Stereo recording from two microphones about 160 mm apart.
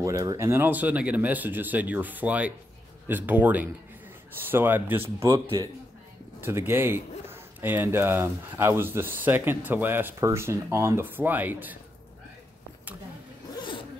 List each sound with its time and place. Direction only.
0.0 s a man's voice: 20° right (ahead or behind)
6.4 s a man's voice: 15° right (ahead or behind)